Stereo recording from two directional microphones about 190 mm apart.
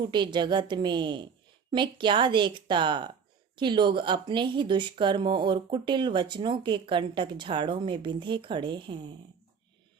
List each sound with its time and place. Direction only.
0.0 s speech: 25° right (ahead or behind)